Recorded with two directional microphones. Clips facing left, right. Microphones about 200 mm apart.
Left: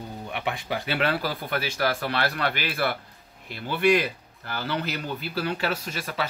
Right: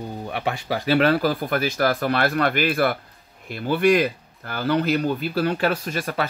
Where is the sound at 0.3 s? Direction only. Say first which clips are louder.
Right 4 dB; 40° right (ahead or behind).